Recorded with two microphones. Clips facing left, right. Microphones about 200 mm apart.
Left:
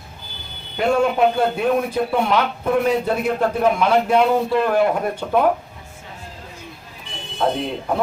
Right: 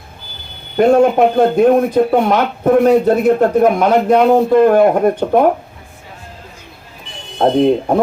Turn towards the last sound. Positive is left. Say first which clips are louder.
# right 11 dB
turn(degrees=-50)  # may be behind; listen again after turning